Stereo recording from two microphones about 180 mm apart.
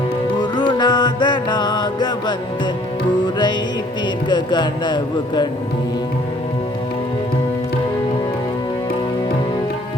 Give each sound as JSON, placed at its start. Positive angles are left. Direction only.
{"t": 0.5, "sound": "music", "side_deg": 25}
{"t": 4.3, "sound": "speech", "side_deg": 25}